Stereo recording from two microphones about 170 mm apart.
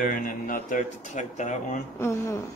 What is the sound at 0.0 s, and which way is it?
Speech, 55° left (ahead or behind).